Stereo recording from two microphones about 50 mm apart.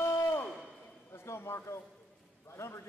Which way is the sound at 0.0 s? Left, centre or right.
Left.